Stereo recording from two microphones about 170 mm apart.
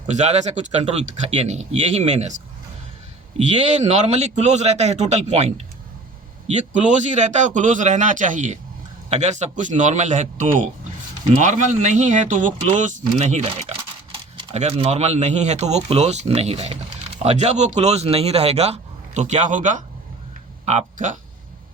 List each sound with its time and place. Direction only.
0.1 s speech: 40° right (ahead or behind)
3.3 s speech: 40° right (ahead or behind)